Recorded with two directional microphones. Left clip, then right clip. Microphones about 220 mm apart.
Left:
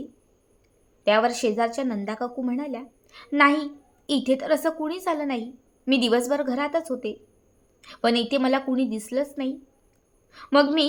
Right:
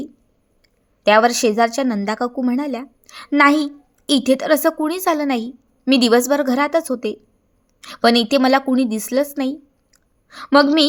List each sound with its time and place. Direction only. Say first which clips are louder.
1.0 s a woman's voice: right 7 dB; 35° right (ahead or behind)